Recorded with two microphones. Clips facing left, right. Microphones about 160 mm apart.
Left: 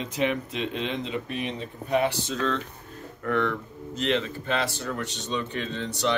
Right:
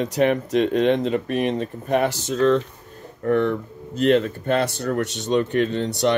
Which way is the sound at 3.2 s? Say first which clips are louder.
Right 6 dB; 35° right (ahead or behind).